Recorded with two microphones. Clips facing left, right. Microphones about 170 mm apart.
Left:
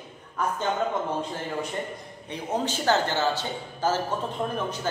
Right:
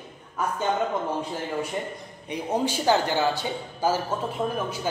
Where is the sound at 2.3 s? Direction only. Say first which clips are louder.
Right 3 dB; 10° right (ahead or behind).